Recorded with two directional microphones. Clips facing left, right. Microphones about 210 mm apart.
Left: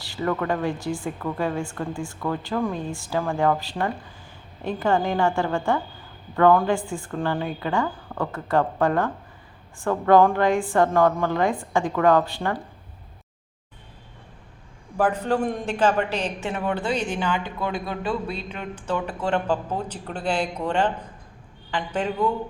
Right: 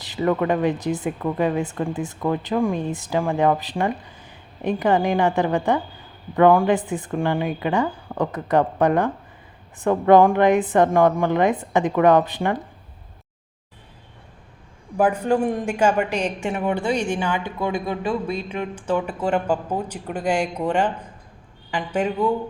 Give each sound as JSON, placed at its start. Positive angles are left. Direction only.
{"t": 0.0, "sound": "a man's voice", "side_deg": -20}
{"t": 14.9, "sound": "a man's voice", "side_deg": -10}